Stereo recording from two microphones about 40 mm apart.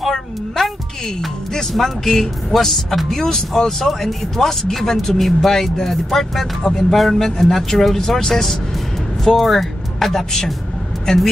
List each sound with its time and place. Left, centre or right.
0.0 s speech: centre